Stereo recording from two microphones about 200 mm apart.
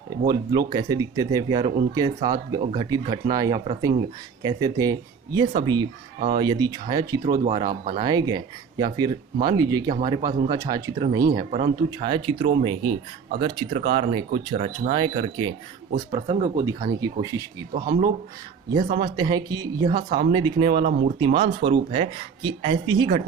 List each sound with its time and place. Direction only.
0.3 s speech: 20° right (ahead or behind)
11.5 s speech: 30° right (ahead or behind)
17.0 s speech: 20° right (ahead or behind)